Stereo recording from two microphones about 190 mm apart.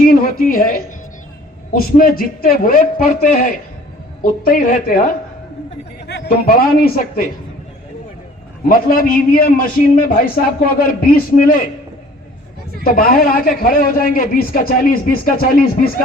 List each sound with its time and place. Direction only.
0.0 s a man's voice: 50° left (ahead or behind)
8.6 s a man's voice: 50° left (ahead or behind)
12.8 s a man's voice: 50° left (ahead or behind)